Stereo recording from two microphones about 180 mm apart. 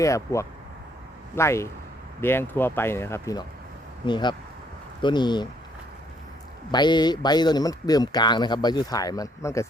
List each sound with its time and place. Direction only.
0.0 s speech: 15° left (ahead or behind)
6.7 s speech: 25° left (ahead or behind)